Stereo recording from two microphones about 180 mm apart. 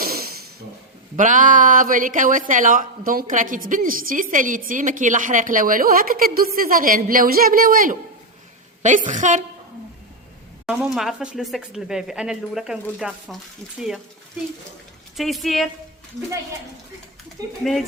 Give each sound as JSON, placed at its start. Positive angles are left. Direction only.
{"t": 0.0, "sound": "a sound", "side_deg": -55}
{"t": 1.1, "sound": "a woman's voice", "side_deg": -45}
{"t": 10.7, "sound": "speech", "side_deg": 0}
{"t": 15.1, "sound": "speech", "side_deg": 0}
{"t": 17.6, "sound": "speech", "side_deg": 0}